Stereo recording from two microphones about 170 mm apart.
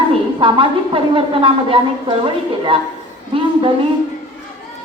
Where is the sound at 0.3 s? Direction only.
30° right (ahead or behind).